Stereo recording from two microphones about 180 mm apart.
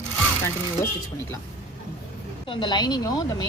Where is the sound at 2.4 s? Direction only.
25° left (ahead or behind).